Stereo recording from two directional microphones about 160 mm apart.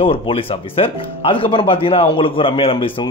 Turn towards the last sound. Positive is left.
turn(degrees=35)  # may be behind; listen again after turning